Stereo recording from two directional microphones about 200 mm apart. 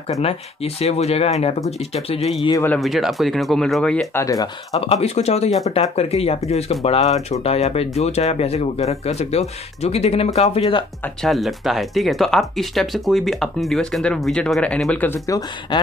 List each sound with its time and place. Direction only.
0.2 s speech: 30° left (ahead or behind)
2.6 s speech: 5° left (ahead or behind)
5.0 s speech: 30° left (ahead or behind)
11.2 s speech: centre (ahead or behind); by 15.8 s 15° left (ahead or behind)